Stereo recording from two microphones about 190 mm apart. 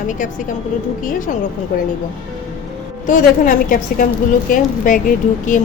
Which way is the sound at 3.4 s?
45° left (ahead or behind).